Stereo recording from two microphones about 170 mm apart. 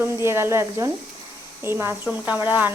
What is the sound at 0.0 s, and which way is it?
Speech, 15° right (ahead or behind).